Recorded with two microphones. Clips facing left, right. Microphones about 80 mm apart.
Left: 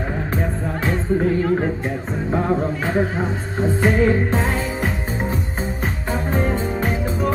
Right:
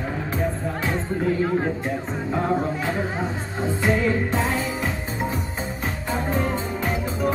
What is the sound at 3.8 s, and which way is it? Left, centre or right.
Music, left.